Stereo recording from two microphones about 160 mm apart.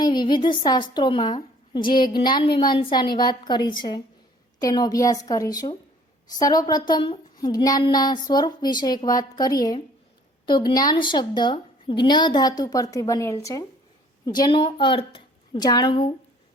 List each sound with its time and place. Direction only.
0.0 s a woman's voice: 30° left (ahead or behind)